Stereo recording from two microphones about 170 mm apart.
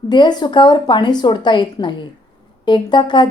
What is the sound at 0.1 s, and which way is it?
A woman's voice, 25° left (ahead or behind).